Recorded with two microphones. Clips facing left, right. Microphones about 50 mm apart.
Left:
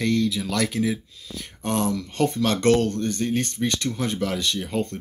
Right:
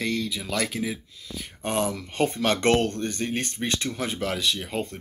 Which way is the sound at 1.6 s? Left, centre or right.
Right.